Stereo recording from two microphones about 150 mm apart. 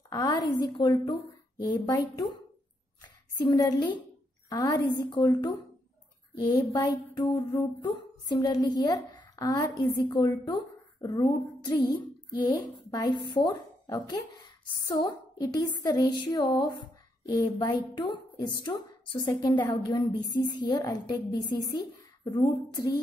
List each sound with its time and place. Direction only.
0.1 s a woman's voice: 25° left (ahead or behind)